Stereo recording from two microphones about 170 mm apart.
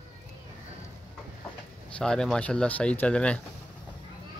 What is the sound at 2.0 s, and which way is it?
Speech, 5° left (ahead or behind).